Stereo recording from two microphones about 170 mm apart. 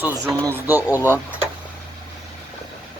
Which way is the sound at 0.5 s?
10° right (ahead or behind).